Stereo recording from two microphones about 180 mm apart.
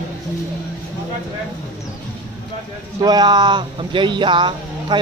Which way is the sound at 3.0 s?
20° right (ahead or behind).